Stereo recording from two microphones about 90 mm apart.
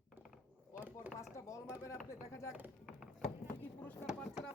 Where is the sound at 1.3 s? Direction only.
35° left (ahead or behind).